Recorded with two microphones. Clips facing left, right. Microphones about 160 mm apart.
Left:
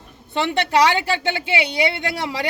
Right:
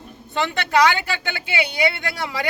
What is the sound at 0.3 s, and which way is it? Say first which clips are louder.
A woman's voice: left 1 dB; 30° left (ahead or behind).